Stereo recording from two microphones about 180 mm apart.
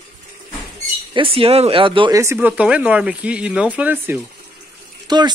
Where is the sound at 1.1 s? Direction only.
30° right (ahead or behind).